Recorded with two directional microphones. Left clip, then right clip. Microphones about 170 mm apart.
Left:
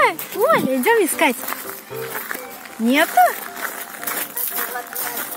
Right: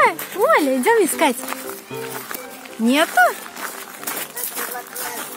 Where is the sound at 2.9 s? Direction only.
20° right (ahead or behind).